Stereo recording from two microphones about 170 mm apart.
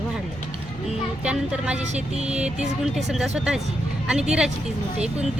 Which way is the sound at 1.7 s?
40° right (ahead or behind).